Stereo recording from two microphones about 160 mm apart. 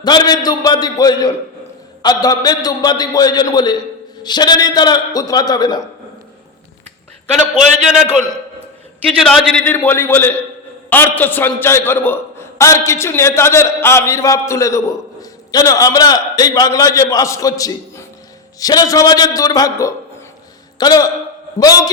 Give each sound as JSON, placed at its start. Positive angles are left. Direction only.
{"t": 0.0, "sound": "a man's voice", "side_deg": 25}
{"t": 7.9, "sound": "a man's voice", "side_deg": 0}
{"t": 9.7, "sound": "a man's voice", "side_deg": 15}